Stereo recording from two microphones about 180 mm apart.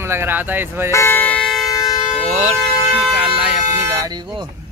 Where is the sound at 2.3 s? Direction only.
35° right (ahead or behind).